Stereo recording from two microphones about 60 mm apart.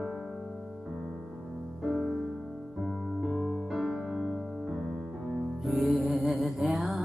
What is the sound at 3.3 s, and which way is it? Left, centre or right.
Music, centre.